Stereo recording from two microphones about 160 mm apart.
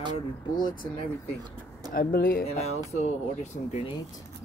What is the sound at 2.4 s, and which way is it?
Music, 40° left (ahead or behind).